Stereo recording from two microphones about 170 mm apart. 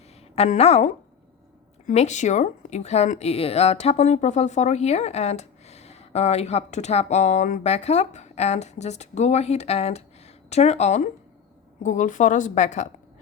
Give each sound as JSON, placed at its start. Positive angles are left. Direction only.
{"t": 0.3, "sound": "a woman's voice", "side_deg": 40}